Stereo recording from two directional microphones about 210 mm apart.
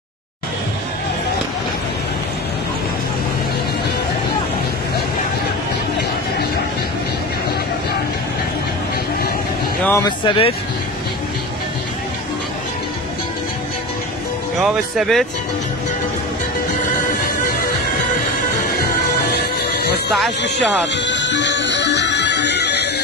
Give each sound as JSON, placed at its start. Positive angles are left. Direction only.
{"t": 9.8, "sound": "speech", "side_deg": 15}
{"t": 14.6, "sound": "speech", "side_deg": 0}
{"t": 20.1, "sound": "speech", "side_deg": 0}
{"t": 20.9, "sound": "music", "side_deg": 60}